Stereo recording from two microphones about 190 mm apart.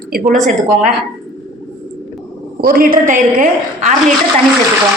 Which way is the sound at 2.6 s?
50° right (ahead or behind).